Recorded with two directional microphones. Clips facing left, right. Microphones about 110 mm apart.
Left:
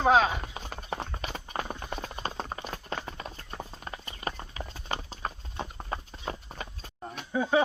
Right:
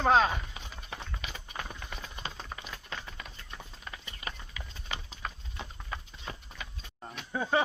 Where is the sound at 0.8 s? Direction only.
40° left (ahead or behind).